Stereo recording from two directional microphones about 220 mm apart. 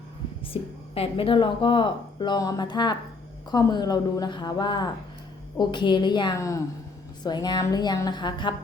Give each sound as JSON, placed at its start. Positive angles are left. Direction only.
{"t": 0.5, "sound": "a woman's voice", "side_deg": 25}